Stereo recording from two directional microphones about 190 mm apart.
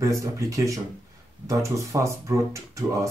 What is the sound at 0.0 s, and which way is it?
Speech, 15° right (ahead or behind).